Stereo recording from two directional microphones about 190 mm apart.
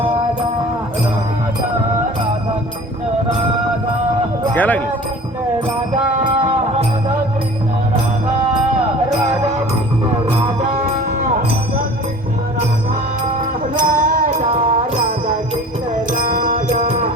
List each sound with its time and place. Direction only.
4.5 s speech: 10° left (ahead or behind)
6.2 s music: 25° right (ahead or behind)
13.7 s music: 50° right (ahead or behind)
14.6 s music: 30° right (ahead or behind)
16.1 s music: 50° right (ahead or behind)